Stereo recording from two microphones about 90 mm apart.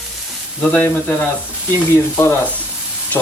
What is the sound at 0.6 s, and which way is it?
Speech, 20° left (ahead or behind).